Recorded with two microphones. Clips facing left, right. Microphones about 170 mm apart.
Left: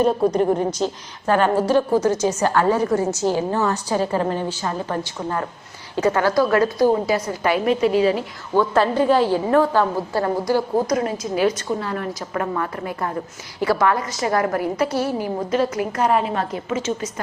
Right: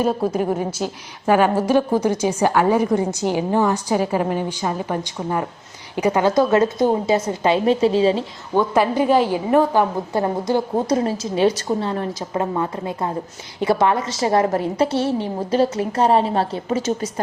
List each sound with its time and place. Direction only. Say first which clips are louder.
0.0 s a woman's voice: left 2 dB; 5° right (ahead or behind); by 8.6 s 25° right (ahead or behind)
8.7 s a woman's voice: right 1 dB; 15° right (ahead or behind); by 17.1 s 35° right (ahead or behind)